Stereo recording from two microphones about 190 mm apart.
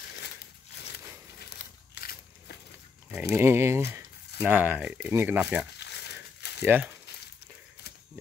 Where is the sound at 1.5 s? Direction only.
50° left (ahead or behind).